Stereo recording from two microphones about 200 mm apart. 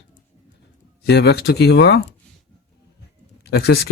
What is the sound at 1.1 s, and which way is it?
Speech, 55° left (ahead or behind).